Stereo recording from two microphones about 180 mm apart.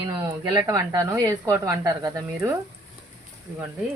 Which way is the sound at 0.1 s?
20° right (ahead or behind).